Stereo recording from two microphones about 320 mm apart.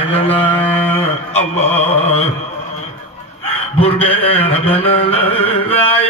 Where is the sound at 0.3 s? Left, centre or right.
Centre.